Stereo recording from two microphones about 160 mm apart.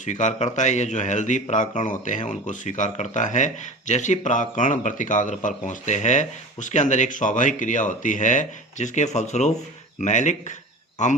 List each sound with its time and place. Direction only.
0.0 s a man's voice: 50° left (ahead or behind)